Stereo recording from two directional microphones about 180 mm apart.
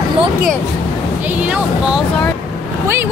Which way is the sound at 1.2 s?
10° right (ahead or behind).